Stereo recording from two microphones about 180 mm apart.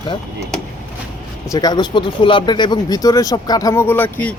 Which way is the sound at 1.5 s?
25° left (ahead or behind).